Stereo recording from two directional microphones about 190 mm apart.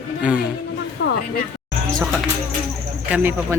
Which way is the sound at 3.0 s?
10° right (ahead or behind).